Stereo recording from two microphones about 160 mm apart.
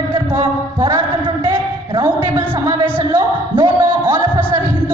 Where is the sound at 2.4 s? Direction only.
15° right (ahead or behind).